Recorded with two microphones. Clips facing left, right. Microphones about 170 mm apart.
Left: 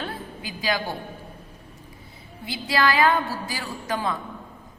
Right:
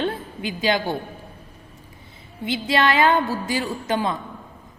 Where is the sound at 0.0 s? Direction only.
25° right (ahead or behind).